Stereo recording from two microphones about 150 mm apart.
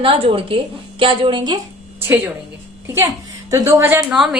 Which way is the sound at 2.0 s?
15° right (ahead or behind).